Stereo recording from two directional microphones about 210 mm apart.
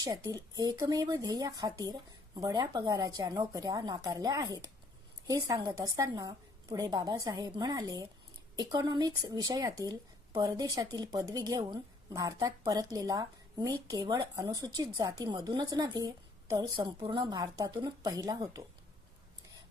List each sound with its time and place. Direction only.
0.0 s a woman's voice: 15° right (ahead or behind)